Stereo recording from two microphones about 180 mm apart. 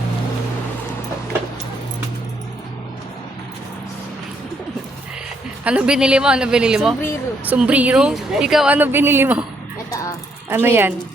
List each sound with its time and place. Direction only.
5.6 s a woman's voice: 5° right (ahead or behind)
9.9 s a sound: 20° left (ahead or behind)
10.5 s speech: 10° right (ahead or behind)